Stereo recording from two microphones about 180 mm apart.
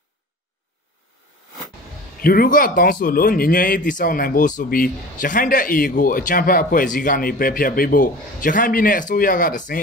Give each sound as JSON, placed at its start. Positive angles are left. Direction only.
{"t": 2.2, "sound": "speech", "side_deg": 55}